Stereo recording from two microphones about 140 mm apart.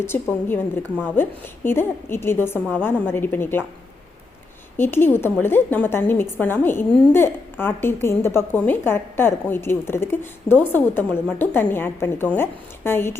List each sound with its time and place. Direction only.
0.0 s a woman's voice: 15° left (ahead or behind)
4.8 s a woman's voice: 15° left (ahead or behind)